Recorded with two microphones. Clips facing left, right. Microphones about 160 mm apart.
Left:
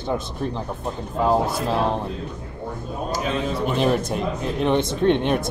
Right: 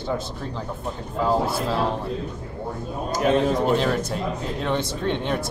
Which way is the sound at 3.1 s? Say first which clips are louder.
Right 5 dB; 50° right (ahead or behind).